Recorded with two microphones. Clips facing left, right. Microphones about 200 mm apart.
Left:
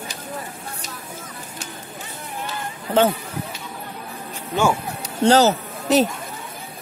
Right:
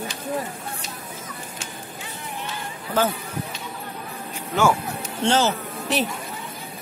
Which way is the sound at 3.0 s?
30° left (ahead or behind).